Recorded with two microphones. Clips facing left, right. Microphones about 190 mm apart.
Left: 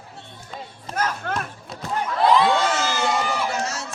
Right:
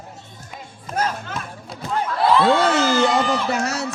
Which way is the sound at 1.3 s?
60° left (ahead or behind).